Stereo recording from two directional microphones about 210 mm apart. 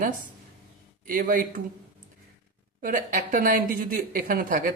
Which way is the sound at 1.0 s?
40° right (ahead or behind).